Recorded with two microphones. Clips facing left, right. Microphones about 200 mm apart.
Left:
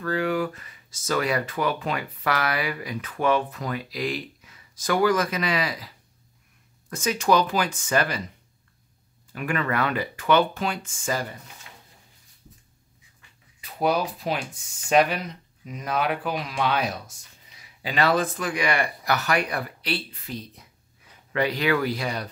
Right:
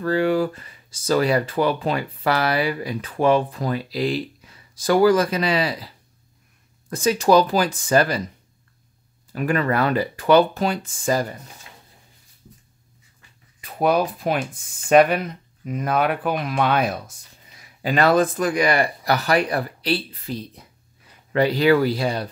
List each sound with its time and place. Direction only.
0.0 s speech: 30° right (ahead or behind)
6.9 s speech: 35° right (ahead or behind)
9.3 s speech: 35° right (ahead or behind)
13.6 s speech: 55° right (ahead or behind); by 22.3 s 30° right (ahead or behind)